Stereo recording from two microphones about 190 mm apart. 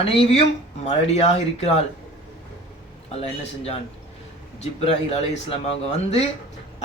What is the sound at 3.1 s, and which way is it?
Speech, 35° left (ahead or behind).